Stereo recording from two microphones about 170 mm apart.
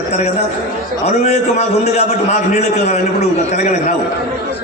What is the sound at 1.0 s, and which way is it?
A man's voice, 40° left (ahead or behind).